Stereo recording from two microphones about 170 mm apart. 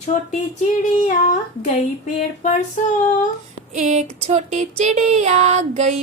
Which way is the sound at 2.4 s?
45° left (ahead or behind).